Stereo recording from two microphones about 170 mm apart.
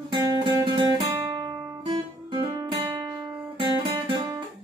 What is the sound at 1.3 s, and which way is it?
Guitar, 30° right (ahead or behind).